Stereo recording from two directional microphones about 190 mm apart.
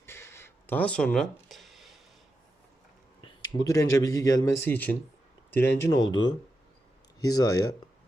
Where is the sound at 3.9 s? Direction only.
15° left (ahead or behind).